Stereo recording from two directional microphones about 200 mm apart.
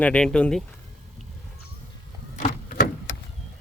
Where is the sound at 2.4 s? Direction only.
45° left (ahead or behind).